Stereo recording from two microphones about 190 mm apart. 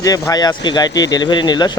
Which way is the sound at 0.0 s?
20° left (ahead or behind).